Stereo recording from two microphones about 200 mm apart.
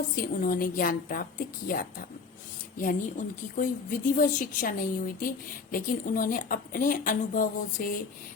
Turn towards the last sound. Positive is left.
turn(degrees=45)  # may be behind; listen again after turning